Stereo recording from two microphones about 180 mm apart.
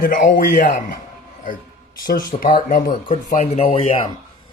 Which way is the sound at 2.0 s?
50° left (ahead or behind).